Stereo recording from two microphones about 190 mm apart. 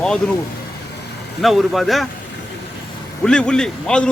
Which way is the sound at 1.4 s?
Centre (ahead or behind).